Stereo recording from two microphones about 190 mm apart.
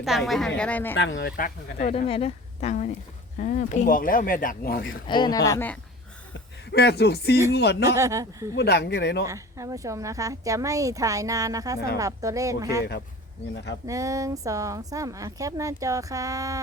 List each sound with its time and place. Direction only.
0.0 s a woman's voice: centre (ahead or behind)
0.9 s speech: 75° left (ahead or behind)
1.4 s speech: 45° left (ahead or behind)
1.9 s speech: 30° left (ahead or behind); by 4.8 s 50° left (ahead or behind)
5.0 s speech: 25° left (ahead or behind)
6.7 s speech: 60° left (ahead or behind)
7.9 s a woman's voice: 15° right (ahead or behind)
8.5 s speech: 60° left (ahead or behind)
9.2 s a woman's voice: 15° right (ahead or behind)
13.8 s a woman's voice: 15° right (ahead or behind)